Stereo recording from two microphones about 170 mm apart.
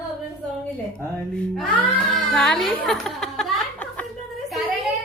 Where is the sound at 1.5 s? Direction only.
Centre (ahead or behind).